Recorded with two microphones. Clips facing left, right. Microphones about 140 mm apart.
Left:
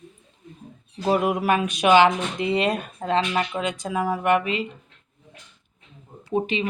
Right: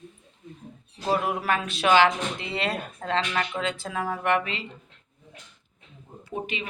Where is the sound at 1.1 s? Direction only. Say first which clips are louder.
Left 4 dB; 15° left (ahead or behind).